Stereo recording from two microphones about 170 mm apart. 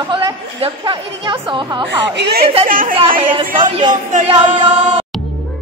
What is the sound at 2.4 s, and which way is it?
A woman's voice, 35° right (ahead or behind).